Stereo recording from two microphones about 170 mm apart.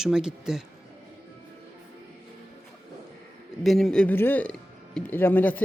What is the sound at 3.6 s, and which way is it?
A man's voice, centre (ahead or behind).